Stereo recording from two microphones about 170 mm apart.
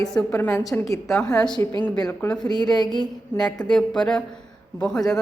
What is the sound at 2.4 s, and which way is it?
Speech, 25° left (ahead or behind).